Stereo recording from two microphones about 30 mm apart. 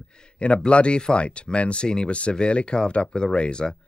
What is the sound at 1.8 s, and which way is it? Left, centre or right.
Speech, left.